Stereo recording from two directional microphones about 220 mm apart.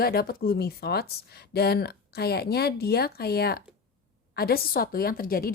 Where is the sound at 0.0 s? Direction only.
45° left (ahead or behind).